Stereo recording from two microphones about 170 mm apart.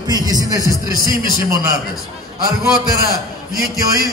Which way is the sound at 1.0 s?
55° right (ahead or behind).